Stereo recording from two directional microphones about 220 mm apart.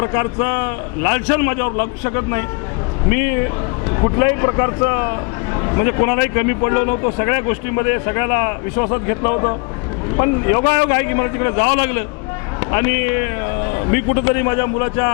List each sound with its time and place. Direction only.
0.0 s speech: 20° left (ahead or behind)